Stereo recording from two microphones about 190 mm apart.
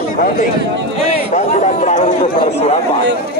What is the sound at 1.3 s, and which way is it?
Speech, 40° left (ahead or behind).